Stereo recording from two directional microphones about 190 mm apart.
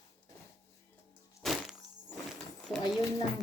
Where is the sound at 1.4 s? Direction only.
Centre (ahead or behind).